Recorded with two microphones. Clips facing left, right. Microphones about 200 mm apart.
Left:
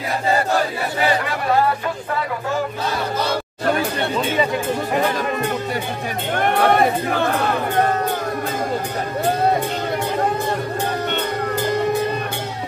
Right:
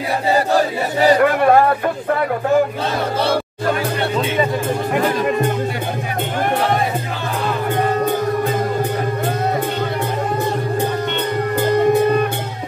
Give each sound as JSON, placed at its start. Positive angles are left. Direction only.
{"t": 1.0, "sound": "speech", "side_deg": -55}
{"t": 6.6, "sound": "music", "side_deg": 60}